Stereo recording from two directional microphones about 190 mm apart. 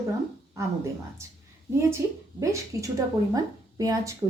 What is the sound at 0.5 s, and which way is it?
Speech, 15° right (ahead or behind).